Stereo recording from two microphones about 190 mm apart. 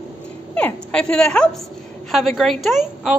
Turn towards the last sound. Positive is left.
turn(degrees=0)  # may be behind; listen again after turning